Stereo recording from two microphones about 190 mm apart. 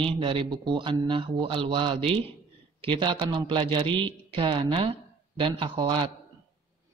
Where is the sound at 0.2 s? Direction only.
25° right (ahead or behind).